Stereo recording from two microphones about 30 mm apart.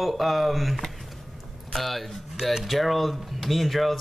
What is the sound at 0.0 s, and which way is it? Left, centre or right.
Speech, centre.